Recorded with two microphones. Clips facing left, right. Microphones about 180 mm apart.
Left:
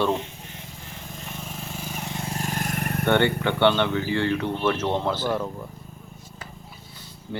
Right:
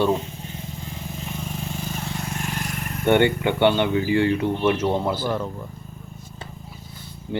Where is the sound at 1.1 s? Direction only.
Centre (ahead or behind); by 3.1 s 55° left (ahead or behind).